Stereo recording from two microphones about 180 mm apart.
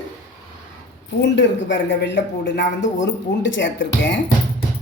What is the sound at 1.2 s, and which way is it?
A woman's voice, 85° left.